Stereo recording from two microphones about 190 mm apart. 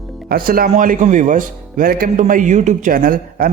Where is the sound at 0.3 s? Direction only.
50° right (ahead or behind).